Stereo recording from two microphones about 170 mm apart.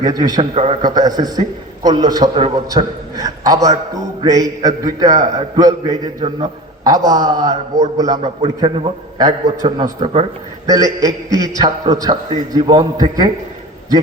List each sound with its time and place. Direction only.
0.0 s a man's voice: 25° right (ahead or behind)
8.2 s a man's voice: 35° right (ahead or behind)